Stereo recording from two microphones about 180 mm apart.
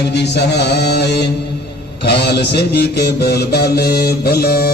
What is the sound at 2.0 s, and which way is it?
Mantra, 65° left (ahead or behind).